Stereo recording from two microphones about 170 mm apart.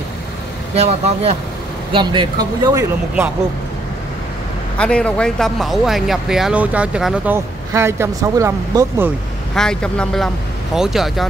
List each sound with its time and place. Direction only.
0.7 s speech: 40° right (ahead or behind)
1.9 s speech: 30° right (ahead or behind)
4.7 s speech: 5° left (ahead or behind)
7.3 s speech: 15° right (ahead or behind)
9.6 s speech: 5° left (ahead or behind)